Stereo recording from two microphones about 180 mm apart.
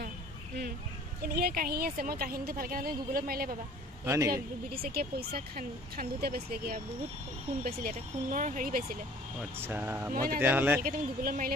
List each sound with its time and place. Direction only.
1.2 s speech: 60° right (ahead or behind)
4.0 s a man's voice: 15° right (ahead or behind)
4.3 s speech: 60° right (ahead or behind)
9.6 s speech: 10° right (ahead or behind)
10.1 s speech: 55° right (ahead or behind)
10.4 s speech: 10° right (ahead or behind)
10.8 s speech: 50° right (ahead or behind)